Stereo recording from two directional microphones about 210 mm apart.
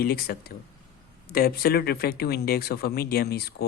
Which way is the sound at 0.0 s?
50° left (ahead or behind).